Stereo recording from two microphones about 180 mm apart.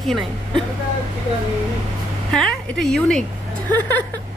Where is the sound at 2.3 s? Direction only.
5° left (ahead or behind).